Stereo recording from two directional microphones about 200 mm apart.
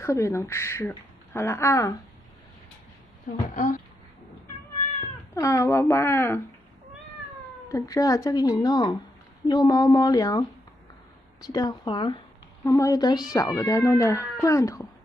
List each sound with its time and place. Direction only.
0.0 s speech: 15° left (ahead or behind)
3.5 s speech: 40° left (ahead or behind)
5.3 s speech: 15° left (ahead or behind)
7.6 s speech: 15° left (ahead or behind)
11.4 s speech: 20° left (ahead or behind)